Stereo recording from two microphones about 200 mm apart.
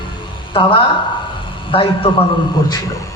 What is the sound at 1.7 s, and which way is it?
Speech, 25° left (ahead or behind).